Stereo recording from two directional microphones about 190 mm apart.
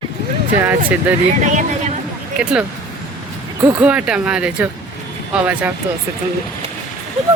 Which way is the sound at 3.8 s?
5° right (ahead or behind).